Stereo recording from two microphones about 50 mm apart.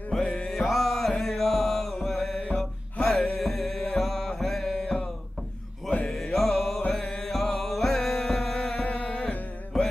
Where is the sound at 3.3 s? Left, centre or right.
Centre.